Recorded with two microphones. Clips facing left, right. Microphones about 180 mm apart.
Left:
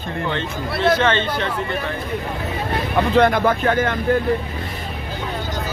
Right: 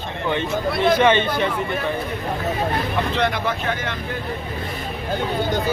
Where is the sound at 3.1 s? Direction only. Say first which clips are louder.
Left 7 dB; 50° left (ahead or behind).